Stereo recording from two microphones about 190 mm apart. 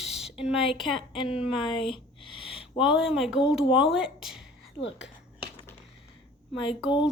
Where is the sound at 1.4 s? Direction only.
Centre (ahead or behind).